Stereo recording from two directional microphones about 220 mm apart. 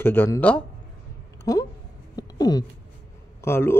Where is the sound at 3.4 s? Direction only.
10° left (ahead or behind).